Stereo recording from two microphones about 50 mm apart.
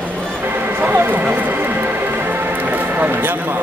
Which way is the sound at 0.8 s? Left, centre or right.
Right.